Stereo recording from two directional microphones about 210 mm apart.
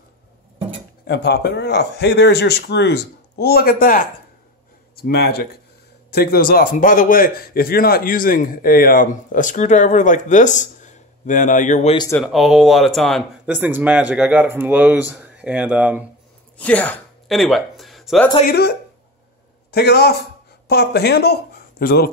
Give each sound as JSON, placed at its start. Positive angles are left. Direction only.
{"t": 1.0, "sound": "a man's voice", "side_deg": 50}
{"t": 12.2, "sound": "speech", "side_deg": 0}
{"t": 16.5, "sound": "speech", "side_deg": 5}
{"t": 18.5, "sound": "speech", "side_deg": 50}